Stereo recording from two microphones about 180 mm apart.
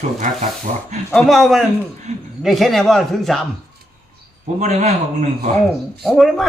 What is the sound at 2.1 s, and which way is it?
Speech, 40° right (ahead or behind).